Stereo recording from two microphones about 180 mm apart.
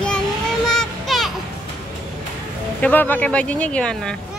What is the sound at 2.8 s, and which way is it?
Speech, 10° left (ahead or behind).